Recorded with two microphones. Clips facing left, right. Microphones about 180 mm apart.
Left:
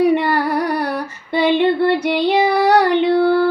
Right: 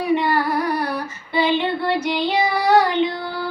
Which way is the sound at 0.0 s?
65° left (ahead or behind).